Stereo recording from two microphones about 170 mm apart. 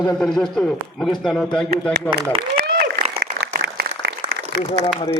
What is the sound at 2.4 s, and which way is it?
Applause, 75° right (ahead or behind).